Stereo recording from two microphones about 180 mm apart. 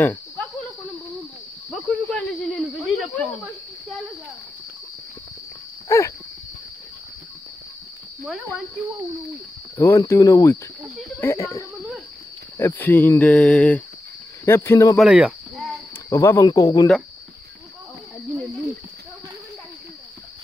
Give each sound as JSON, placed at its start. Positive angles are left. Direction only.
{"t": 0.0, "sound": "cricket", "side_deg": 10}
{"t": 1.7, "sound": "cricket", "side_deg": 5}
{"t": 5.9, "sound": "a sound", "side_deg": 15}
{"t": 9.8, "sound": "speech", "side_deg": 15}
{"t": 15.0, "sound": "speech", "side_deg": -5}
{"t": 16.1, "sound": "speech", "side_deg": 15}